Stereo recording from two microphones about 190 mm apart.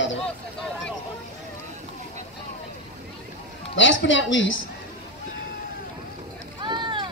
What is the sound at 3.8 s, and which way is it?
Speech, 80° left.